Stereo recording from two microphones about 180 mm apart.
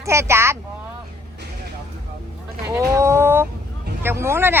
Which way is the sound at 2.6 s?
15° right (ahead or behind).